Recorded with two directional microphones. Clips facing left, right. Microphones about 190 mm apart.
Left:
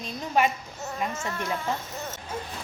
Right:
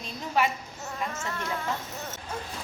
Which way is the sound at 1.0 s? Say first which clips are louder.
Left 2 dB; 15° left (ahead or behind).